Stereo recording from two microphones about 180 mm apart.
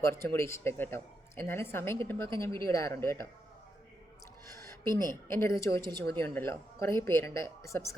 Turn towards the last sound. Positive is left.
turn(degrees=15)  # may be behind; listen again after turning